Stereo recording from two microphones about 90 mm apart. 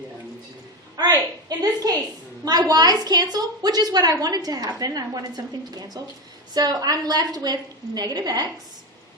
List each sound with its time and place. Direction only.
1.0 s a woman's voice: 50° right (ahead or behind)